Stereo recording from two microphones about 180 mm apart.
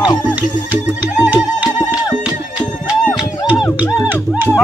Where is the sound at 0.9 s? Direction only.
10° right (ahead or behind).